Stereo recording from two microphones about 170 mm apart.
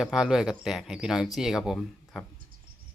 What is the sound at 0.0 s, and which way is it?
Speech, centre (ahead or behind).